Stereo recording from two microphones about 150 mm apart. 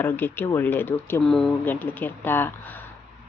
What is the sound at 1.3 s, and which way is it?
Speech, centre (ahead or behind).